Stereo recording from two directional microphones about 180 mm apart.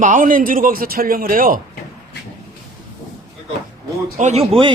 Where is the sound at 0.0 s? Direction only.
45° right (ahead or behind).